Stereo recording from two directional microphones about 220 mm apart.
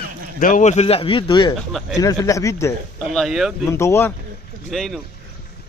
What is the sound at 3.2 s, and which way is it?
Speech, centre (ahead or behind).